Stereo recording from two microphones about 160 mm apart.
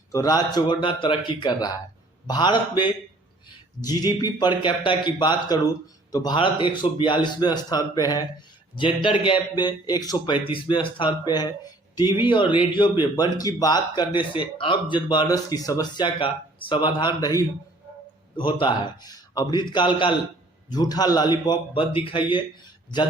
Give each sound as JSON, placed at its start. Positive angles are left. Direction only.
{"t": 0.1, "sound": "a man's voice", "side_deg": 25}